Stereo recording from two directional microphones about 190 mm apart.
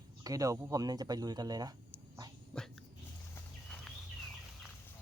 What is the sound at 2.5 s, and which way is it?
Dog, centre (ahead or behind).